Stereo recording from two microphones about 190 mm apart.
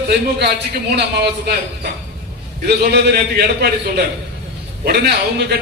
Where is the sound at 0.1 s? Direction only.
60° right (ahead or behind).